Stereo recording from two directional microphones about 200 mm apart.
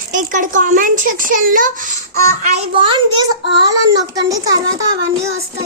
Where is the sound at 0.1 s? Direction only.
40° right (ahead or behind).